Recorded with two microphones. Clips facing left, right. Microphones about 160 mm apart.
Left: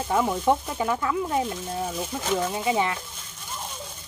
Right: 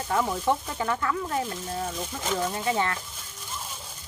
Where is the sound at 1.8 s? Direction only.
5° left (ahead or behind).